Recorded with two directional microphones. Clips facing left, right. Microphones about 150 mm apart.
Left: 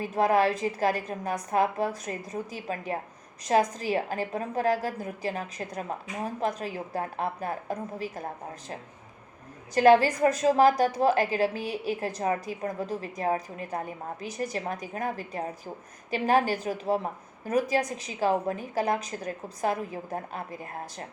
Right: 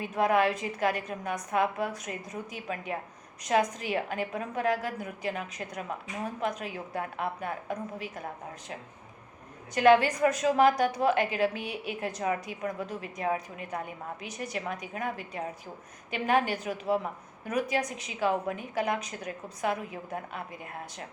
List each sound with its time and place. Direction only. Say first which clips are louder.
0.0 s a woman's voice: left 2 dB; 35° left (ahead or behind)
9.7 s a woman's voice: left 2 dB; 35° left (ahead or behind)